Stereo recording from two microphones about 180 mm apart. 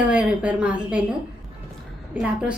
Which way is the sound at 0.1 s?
5° right (ahead or behind).